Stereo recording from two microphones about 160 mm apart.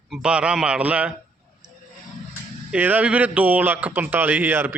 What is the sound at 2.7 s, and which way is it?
A man's voice, 10° right (ahead or behind).